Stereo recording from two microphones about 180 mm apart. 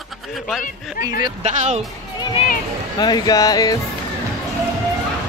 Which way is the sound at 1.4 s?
40° right (ahead or behind).